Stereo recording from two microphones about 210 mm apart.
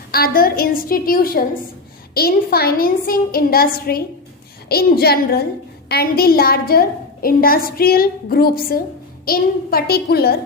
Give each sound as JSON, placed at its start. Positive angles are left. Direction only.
{"t": 0.1, "sound": "a woman's voice", "side_deg": 45}